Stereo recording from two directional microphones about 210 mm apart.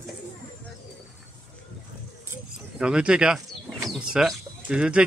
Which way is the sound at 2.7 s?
5° right (ahead or behind).